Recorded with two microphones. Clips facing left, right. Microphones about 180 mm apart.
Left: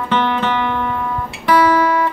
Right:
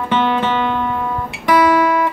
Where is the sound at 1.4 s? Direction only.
15° right (ahead or behind).